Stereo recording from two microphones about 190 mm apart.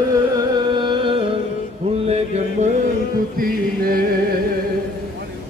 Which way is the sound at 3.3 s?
50° right (ahead or behind).